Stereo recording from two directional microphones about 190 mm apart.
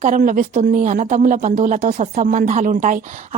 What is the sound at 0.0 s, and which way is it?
Speech, 40° right (ahead or behind).